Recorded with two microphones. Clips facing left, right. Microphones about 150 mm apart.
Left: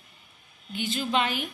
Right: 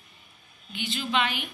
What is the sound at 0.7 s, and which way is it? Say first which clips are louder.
Speech: left 2 dB; 45° left (ahead or behind).